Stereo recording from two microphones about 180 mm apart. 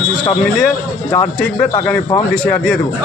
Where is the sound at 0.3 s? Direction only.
5° left (ahead or behind).